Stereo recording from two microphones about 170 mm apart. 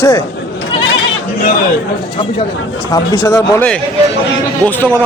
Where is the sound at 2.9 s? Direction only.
20° left (ahead or behind).